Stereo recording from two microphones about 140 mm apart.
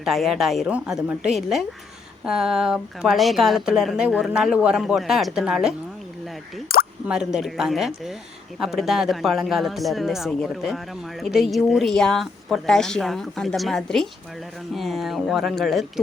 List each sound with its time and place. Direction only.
0.0 s a woman's voice: centre (ahead or behind)
6.7 s plop: 90° left
7.1 s a woman's voice: 5° right (ahead or behind)